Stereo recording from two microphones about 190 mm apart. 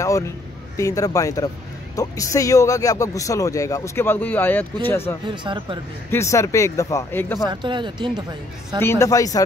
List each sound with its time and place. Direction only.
0.0 s a sound: 15° left (ahead or behind)
0.7 s a man's voice: 15° left (ahead or behind)
5.3 s speech: 25° right (ahead or behind)
6.0 s a man's voice: 15° left (ahead or behind)
7.4 s speech: 25° right (ahead or behind)
8.8 s a man's voice: 15° left (ahead or behind)